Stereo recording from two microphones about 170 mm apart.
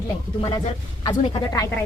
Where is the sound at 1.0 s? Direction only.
20° left (ahead or behind).